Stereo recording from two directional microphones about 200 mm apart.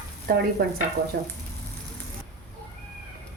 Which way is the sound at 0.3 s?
50° right (ahead or behind).